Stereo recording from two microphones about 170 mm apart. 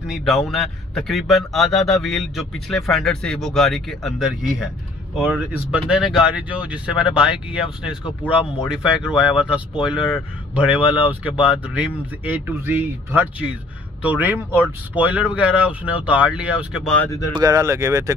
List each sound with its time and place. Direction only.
0.0 s a man's voice: centre (ahead or behind)
16.8 s speech: 5° left (ahead or behind)
17.3 s speech: 20° right (ahead or behind)